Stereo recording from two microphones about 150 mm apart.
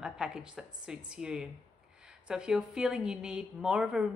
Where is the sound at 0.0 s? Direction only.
5° right (ahead or behind).